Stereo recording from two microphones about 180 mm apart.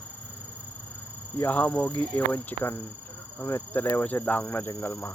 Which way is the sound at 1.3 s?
10° left (ahead or behind).